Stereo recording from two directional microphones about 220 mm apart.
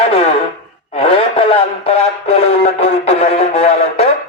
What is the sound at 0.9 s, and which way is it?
Speech, 25° left (ahead or behind).